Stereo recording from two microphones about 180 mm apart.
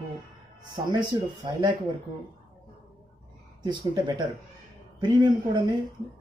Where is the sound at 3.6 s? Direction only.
25° right (ahead or behind).